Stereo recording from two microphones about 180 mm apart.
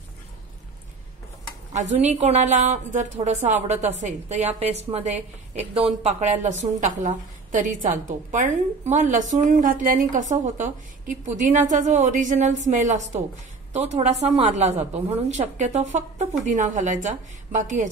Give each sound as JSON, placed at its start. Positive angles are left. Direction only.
{"t": 1.7, "sound": "a woman's voice", "side_deg": -40}